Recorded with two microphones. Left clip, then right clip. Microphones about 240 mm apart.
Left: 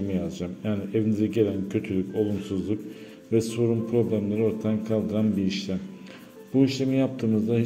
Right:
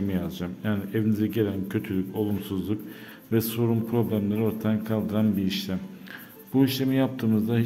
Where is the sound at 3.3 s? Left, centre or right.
Centre.